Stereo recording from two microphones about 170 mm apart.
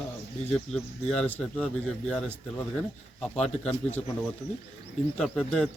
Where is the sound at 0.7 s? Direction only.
40° left (ahead or behind).